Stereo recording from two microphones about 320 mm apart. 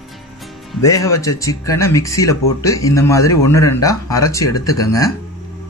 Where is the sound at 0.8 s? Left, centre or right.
Centre.